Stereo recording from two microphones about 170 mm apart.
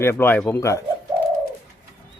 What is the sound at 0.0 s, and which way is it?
Speech, 15° left (ahead or behind).